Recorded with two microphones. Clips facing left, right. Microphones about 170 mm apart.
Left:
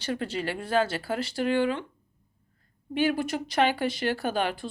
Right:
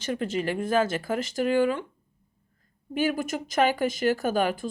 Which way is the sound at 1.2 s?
45° right (ahead or behind).